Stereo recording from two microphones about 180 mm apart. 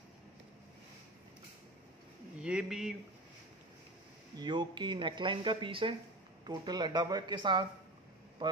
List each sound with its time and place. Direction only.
2.4 s speech: 5° right (ahead or behind)
4.4 s speech: 25° right (ahead or behind)